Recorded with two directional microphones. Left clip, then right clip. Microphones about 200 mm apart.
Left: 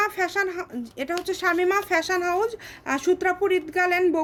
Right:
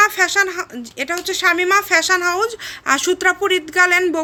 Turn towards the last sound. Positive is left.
turn(degrees=0)  # may be behind; listen again after turning